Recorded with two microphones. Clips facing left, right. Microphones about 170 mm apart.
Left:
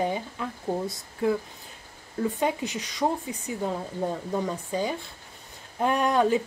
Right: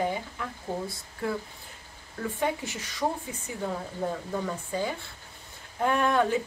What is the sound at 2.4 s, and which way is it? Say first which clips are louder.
A woman's voice: left 3 dB; 20° left (ahead or behind).